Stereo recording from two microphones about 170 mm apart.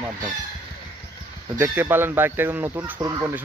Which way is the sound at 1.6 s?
10° right (ahead or behind).